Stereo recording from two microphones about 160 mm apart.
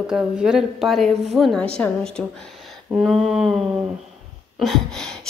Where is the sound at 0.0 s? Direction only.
5° right (ahead or behind).